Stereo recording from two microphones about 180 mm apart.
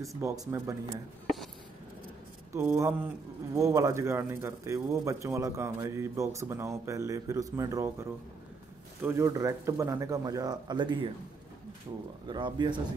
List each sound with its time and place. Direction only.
0.2 s a man's voice: 15° right (ahead or behind)
2.5 s a man's voice: 15° right (ahead or behind)
12.3 s speech: 25° right (ahead or behind)